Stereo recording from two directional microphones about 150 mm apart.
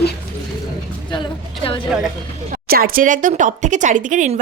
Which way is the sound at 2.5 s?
80° right.